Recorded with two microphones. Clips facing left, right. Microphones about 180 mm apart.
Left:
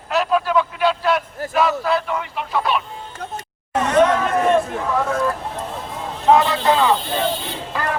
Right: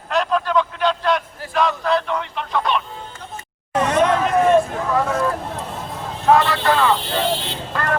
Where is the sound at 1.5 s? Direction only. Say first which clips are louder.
Even; 5° left (ahead or behind).